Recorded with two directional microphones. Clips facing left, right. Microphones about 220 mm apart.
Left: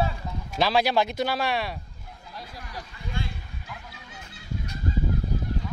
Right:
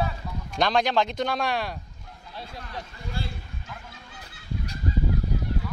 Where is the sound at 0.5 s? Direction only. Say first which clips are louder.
Even; 5° left (ahead or behind).